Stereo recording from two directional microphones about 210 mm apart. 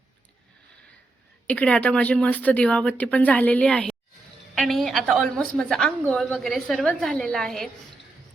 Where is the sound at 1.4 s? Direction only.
5° left (ahead or behind).